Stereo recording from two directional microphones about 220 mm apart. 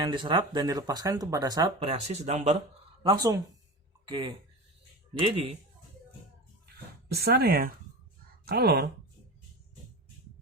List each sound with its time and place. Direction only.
0.0 s speech: 20° right (ahead or behind)
3.0 s speech: 20° right (ahead or behind)
7.1 s speech: 45° right (ahead or behind)